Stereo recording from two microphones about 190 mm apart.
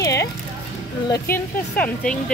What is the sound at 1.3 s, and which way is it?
Speech, 5° left (ahead or behind).